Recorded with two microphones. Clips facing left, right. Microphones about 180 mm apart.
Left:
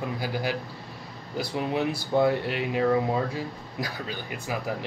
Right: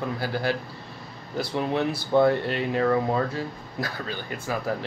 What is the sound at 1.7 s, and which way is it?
Speech, 10° left (ahead or behind).